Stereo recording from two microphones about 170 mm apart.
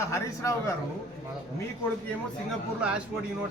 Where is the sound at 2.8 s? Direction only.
5° right (ahead or behind).